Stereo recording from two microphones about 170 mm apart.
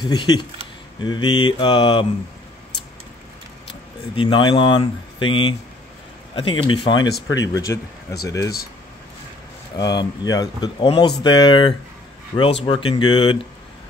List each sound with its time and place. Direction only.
0.0 s speech: 25° left (ahead or behind)
4.1 s speech: 30° left (ahead or behind)
7.2 s speech: 90° left
7.5 s speech: 20° left (ahead or behind)
9.8 s speech: 25° left (ahead or behind)
12.3 s speech: 45° left (ahead or behind)
12.6 s speech: 30° left (ahead or behind)